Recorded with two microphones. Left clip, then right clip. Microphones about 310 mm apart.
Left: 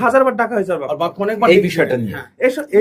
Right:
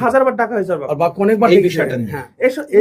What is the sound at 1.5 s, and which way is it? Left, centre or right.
Speech, left.